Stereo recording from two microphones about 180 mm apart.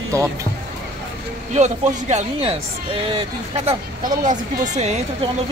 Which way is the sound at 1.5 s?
40° right (ahead or behind).